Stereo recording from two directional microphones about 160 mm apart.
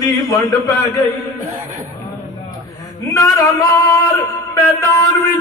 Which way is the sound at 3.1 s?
20° left (ahead or behind).